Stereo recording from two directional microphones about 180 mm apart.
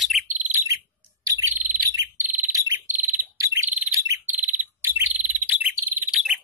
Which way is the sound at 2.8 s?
45° right (ahead or behind).